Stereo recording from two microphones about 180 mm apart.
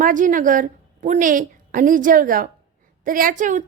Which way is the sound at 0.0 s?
45° right (ahead or behind).